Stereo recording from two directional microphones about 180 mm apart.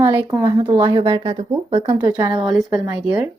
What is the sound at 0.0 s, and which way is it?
Speech, 10° right (ahead or behind).